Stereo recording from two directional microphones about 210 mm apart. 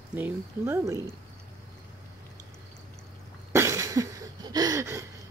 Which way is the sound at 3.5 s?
15° right (ahead or behind).